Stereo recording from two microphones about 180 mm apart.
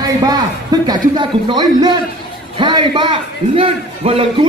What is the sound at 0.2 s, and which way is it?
A man's voice, 20° right (ahead or behind).